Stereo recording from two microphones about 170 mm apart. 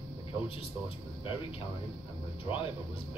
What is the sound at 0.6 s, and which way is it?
Speech, 35° left (ahead or behind).